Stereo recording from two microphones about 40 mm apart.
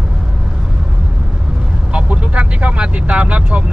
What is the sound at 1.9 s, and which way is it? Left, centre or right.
Vehicle, right.